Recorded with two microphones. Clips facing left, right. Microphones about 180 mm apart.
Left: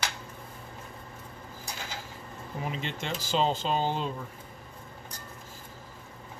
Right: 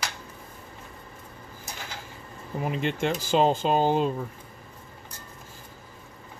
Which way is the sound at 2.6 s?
55° right (ahead or behind).